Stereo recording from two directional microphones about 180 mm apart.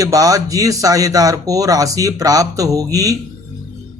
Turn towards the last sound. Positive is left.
turn(degrees=-20)  # may be behind; listen again after turning